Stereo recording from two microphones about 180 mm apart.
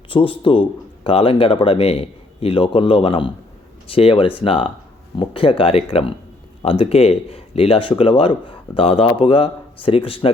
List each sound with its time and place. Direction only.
0.1 s speech: 30° left (ahead or behind)